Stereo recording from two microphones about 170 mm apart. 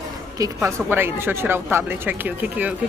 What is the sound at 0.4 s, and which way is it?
A woman's voice, 15° right (ahead or behind).